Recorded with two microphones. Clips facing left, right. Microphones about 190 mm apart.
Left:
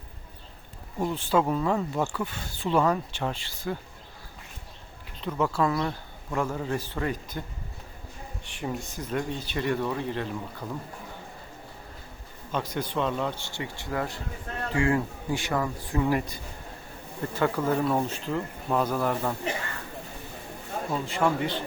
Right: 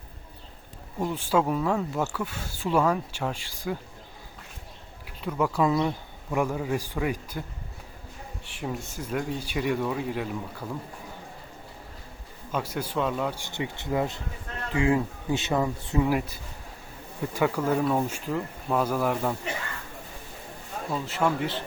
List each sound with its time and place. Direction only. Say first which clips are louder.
1.1 s speech: even; 10° right (ahead or behind)
5.0 s speech: right 1 dB; 10° right (ahead or behind)
8.4 s speech: even; 5° right (ahead or behind)
12.5 s speech: even; 5° right (ahead or behind); by 16.0 s 25° right (ahead or behind)
16.0 s speech: even; 5° right (ahead or behind)
20.9 s speech: even; centre (ahead or behind)